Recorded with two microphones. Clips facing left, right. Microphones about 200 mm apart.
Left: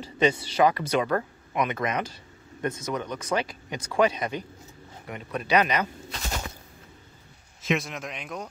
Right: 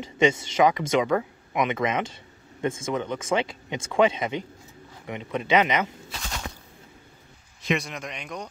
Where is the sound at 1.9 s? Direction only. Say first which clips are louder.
Right 2 dB; 25° right (ahead or behind).